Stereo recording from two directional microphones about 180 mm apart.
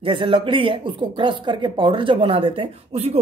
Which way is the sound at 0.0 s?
30° right (ahead or behind).